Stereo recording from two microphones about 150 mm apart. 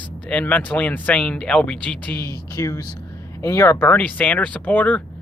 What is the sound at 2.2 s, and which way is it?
Speech, 25° left (ahead or behind).